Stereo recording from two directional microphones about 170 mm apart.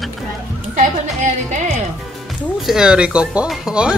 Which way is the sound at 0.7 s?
45° right (ahead or behind).